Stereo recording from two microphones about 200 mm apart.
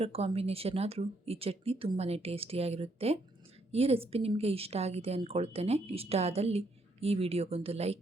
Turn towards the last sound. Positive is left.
turn(degrees=-30)  # may be behind; listen again after turning